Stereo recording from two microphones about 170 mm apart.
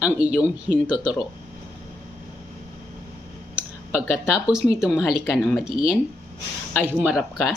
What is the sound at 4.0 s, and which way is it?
Speech, 15° left (ahead or behind).